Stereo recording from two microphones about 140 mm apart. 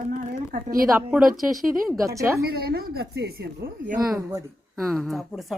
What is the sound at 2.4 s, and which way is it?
Speech, 90° right.